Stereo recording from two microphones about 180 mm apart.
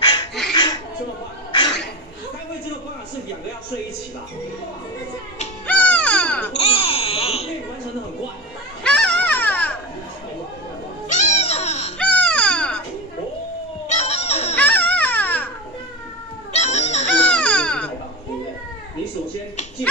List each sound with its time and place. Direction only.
0.0 s a sound: 25° left (ahead or behind)
5.7 s baby cry: 5° left (ahead or behind)
6.6 s baby cry: 30° left (ahead or behind)
8.8 s a sound: 5° left (ahead or behind)
11.1 s music: 40° left (ahead or behind)
12.0 s music: 5° left (ahead or behind)
13.8 s goat: 35° left (ahead or behind)
14.6 s baby cry: 10° left (ahead or behind)
16.5 s chicken: 35° left (ahead or behind)
17.3 s baby cry: 10° left (ahead or behind)